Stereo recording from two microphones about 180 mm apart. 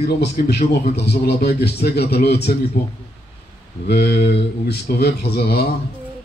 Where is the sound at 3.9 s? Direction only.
60° left (ahead or behind).